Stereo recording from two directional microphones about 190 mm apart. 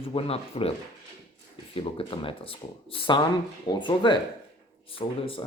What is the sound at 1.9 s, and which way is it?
Speech, 30° left (ahead or behind).